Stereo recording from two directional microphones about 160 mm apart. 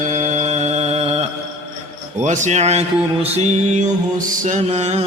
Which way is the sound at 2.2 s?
50° right (ahead or behind).